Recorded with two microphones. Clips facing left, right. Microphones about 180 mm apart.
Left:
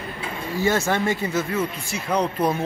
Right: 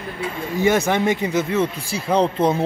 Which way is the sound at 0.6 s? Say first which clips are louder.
Right 4 dB; 20° right (ahead or behind).